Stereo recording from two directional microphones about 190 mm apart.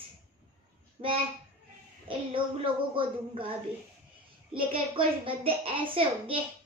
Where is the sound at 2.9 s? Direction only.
25° right (ahead or behind).